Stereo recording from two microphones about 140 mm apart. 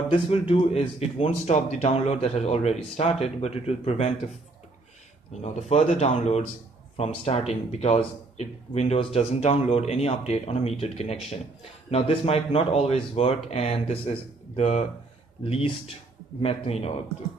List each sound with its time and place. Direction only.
0.1 s speech: 45° left (ahead or behind)
5.4 s speech: 55° left (ahead or behind)